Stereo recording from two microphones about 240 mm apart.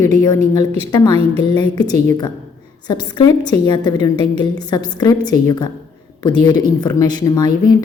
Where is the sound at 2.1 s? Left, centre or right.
Centre.